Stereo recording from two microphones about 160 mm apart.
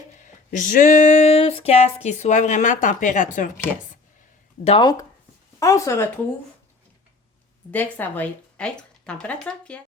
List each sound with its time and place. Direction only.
0.2 s a sound: 55° left (ahead or behind)
4.6 s speech: 35° left (ahead or behind)
5.5 s speech: 20° left (ahead or behind)
7.7 s a woman's voice: 10° left (ahead or behind)